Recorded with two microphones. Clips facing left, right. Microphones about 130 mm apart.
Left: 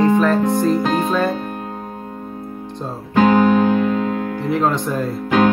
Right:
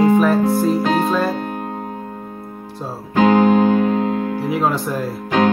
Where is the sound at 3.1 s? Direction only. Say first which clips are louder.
Even; 40° right (ahead or behind).